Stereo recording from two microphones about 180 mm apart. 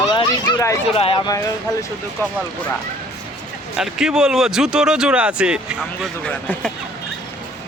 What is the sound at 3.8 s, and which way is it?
Speech, 5° right (ahead or behind).